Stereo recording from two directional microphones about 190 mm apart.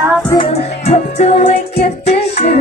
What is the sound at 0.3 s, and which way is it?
Music, 30° left (ahead or behind).